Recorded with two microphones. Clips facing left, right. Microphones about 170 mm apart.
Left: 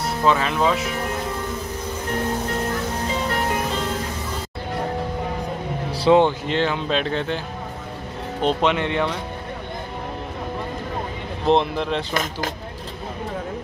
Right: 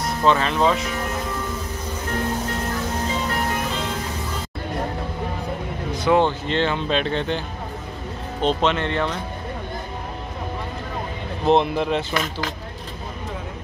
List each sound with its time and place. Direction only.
0.2 s speech: 5° left (ahead or behind)
5.9 s a sound: 30° left (ahead or behind)
6.1 s speech: 10° left (ahead or behind)
11.4 s speech: centre (ahead or behind)
12.1 s speech: 45° left (ahead or behind)